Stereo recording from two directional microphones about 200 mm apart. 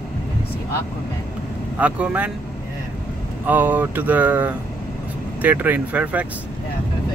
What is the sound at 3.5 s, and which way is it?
Speech, 10° right (ahead or behind).